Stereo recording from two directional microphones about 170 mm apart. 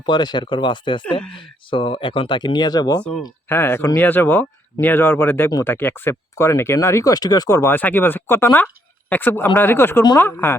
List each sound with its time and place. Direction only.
0.0 s speech: 25° left (ahead or behind)
3.0 s speech: 5° left (ahead or behind)